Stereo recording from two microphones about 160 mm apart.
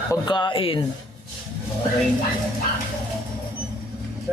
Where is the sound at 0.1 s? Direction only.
30° left (ahead or behind).